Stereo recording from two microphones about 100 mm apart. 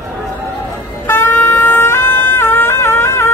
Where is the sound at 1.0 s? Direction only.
20° left (ahead or behind).